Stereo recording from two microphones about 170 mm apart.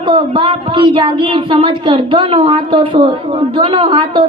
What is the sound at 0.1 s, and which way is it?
A woman's voice, 30° right (ahead or behind).